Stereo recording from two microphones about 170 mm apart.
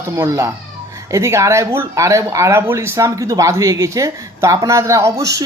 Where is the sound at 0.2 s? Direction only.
15° right (ahead or behind).